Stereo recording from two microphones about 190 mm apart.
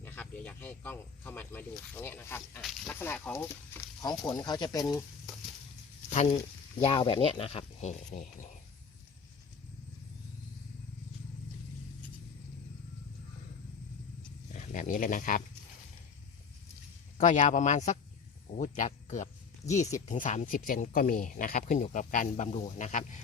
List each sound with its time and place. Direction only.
0.0 s speech: 10° left (ahead or behind)
2.6 s speech: centre (ahead or behind)
2.9 s speech: 10° left (ahead or behind)
6.1 s speech: 35° left (ahead or behind)
14.5 s speech: 40° left (ahead or behind)
17.2 s speech: 40° left (ahead or behind)